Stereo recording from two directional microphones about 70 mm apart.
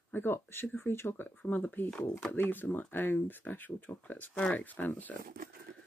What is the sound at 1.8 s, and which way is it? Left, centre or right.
Speech, centre.